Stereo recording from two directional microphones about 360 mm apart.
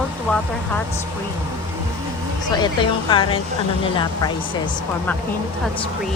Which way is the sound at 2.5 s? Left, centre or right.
Centre.